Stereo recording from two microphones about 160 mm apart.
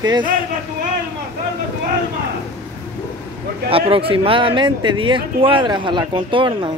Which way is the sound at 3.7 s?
35° right (ahead or behind).